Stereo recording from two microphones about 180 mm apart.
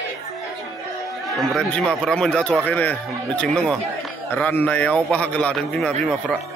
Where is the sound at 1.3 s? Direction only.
Centre (ahead or behind).